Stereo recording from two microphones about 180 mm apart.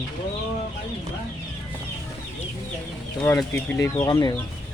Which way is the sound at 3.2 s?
15° left (ahead or behind).